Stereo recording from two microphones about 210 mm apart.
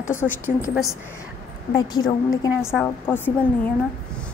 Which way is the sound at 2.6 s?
Centre (ahead or behind).